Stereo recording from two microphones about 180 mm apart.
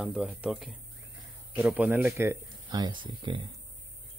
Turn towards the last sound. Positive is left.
turn(degrees=-25)  # may be behind; listen again after turning